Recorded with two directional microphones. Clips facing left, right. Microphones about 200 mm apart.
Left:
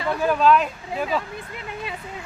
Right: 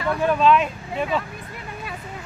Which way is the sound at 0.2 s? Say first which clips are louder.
Even; centre (ahead or behind).